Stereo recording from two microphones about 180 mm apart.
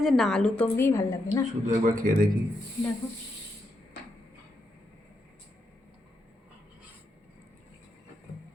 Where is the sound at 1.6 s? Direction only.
50° right (ahead or behind).